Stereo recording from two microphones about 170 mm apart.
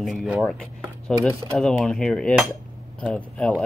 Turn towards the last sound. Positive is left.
turn(degrees=5)  # may be behind; listen again after turning